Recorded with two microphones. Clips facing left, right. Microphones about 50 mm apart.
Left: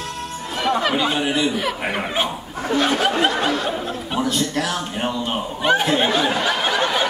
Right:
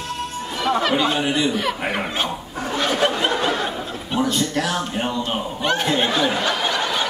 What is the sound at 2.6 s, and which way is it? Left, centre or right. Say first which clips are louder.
Chatter: left 1 dB; centre.